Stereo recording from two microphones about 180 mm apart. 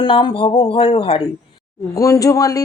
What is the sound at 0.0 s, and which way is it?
Speech, 25° left (ahead or behind).